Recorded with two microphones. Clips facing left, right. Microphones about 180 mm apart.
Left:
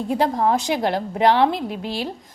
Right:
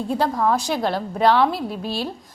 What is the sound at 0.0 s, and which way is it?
A woman's voice, 15° left (ahead or behind).